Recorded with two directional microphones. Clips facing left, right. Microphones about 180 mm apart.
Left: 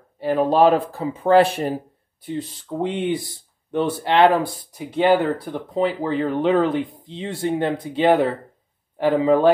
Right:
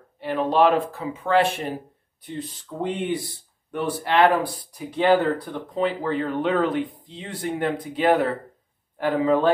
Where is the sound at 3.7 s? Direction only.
25° left (ahead or behind).